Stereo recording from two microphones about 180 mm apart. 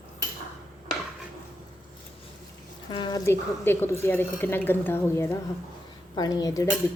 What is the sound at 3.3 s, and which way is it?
A woman's voice, 10° left (ahead or behind).